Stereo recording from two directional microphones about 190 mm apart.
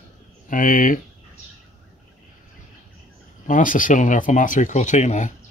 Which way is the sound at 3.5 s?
45° left (ahead or behind).